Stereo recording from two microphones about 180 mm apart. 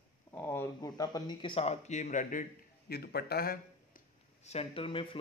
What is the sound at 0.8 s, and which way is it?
Speech, 20° left (ahead or behind).